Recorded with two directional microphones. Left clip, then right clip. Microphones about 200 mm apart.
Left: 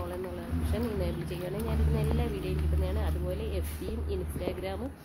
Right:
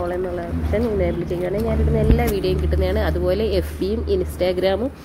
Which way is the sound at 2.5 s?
25° right (ahead or behind).